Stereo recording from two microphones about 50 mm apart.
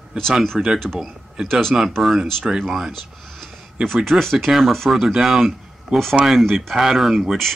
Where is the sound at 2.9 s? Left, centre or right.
Centre.